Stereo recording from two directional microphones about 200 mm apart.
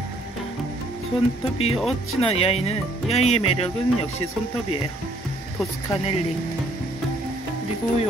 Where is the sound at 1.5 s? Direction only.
30° left (ahead or behind).